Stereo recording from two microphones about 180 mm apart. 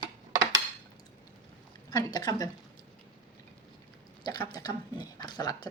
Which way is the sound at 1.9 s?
20° left (ahead or behind).